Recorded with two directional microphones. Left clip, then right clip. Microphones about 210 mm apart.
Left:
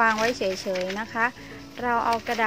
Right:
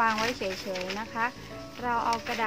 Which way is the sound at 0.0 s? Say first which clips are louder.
Left 5 dB; 25° left (ahead or behind).